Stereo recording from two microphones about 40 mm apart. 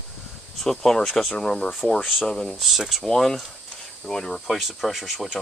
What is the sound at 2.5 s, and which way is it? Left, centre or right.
Speech, centre.